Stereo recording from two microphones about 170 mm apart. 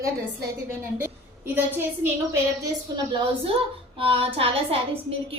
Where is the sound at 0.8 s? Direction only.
15° right (ahead or behind).